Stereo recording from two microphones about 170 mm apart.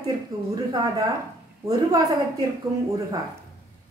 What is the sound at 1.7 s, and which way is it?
Speech, 20° right (ahead or behind).